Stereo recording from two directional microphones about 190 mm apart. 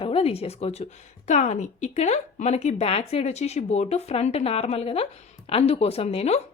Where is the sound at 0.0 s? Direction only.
30° left (ahead or behind).